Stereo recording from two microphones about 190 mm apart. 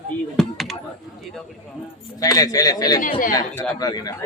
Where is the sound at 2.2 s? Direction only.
20° left (ahead or behind).